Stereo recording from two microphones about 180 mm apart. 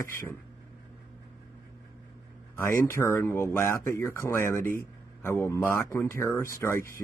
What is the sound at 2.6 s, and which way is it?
Speech, 15° left (ahead or behind).